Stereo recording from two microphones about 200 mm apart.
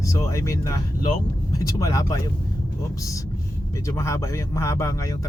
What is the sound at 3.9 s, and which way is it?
Speech, 15° left (ahead or behind).